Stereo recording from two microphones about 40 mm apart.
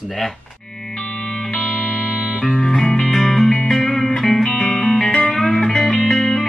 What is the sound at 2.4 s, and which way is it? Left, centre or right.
Music, centre.